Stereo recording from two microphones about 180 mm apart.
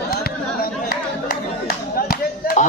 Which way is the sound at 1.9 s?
55° left (ahead or behind).